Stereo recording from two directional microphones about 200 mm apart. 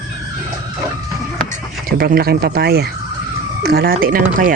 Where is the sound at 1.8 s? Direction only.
50° right (ahead or behind).